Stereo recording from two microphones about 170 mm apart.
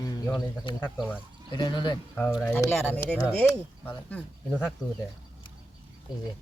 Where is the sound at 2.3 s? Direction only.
5° left (ahead or behind).